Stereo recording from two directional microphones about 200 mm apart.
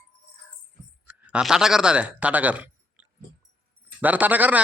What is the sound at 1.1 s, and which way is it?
Speech, 5° right (ahead or behind).